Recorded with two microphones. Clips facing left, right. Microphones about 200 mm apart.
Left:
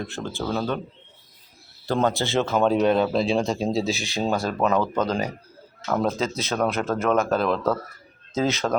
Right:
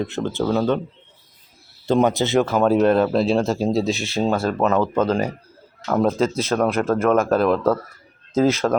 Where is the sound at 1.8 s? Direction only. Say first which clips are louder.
Right 5 dB; 20° right (ahead or behind).